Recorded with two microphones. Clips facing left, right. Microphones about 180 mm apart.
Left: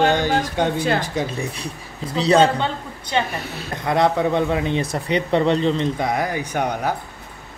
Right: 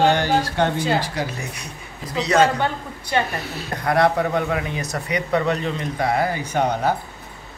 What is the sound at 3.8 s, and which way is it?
Speech, 20° left (ahead or behind).